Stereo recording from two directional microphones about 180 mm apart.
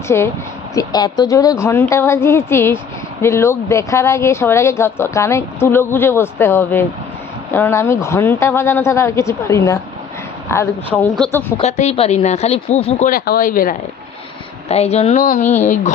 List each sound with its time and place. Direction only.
0.1 s a woman's voice: 15° left (ahead or behind)
11.5 s speech: 35° left (ahead or behind)
13.1 s speech: 55° left (ahead or behind)
14.7 s speech: 35° left (ahead or behind)